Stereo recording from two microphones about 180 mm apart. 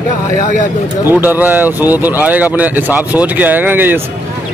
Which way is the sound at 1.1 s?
10° right (ahead or behind).